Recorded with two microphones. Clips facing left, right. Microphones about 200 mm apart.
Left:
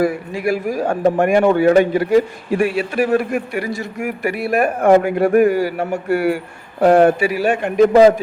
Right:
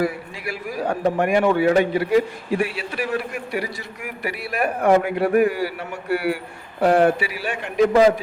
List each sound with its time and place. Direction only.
0.0 s a man's voice: 45° left (ahead or behind)